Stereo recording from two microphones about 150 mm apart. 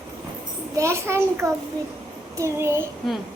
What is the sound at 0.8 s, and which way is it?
Child singing, 20° right (ahead or behind).